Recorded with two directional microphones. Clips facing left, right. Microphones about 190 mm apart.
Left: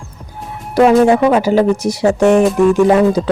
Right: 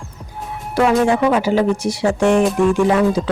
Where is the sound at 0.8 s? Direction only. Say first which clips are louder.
Left 5 dB; 40° left (ahead or behind).